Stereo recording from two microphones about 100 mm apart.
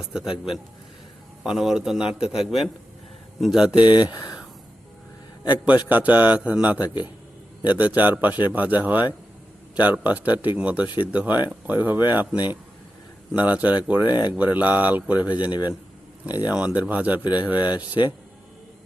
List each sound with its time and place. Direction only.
0.0 s a man's voice: 5° right (ahead or behind)
3.8 s speech: 50° left (ahead or behind)
5.5 s speech: 15° right (ahead or behind)